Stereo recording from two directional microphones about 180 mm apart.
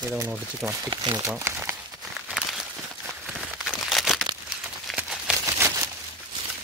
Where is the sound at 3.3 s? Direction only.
Centre (ahead or behind).